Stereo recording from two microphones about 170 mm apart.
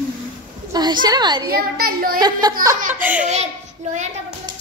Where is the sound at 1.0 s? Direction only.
25° right (ahead or behind).